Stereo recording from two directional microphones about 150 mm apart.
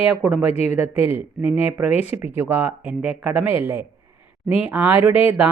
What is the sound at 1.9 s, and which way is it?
Speech, 45° left (ahead or behind).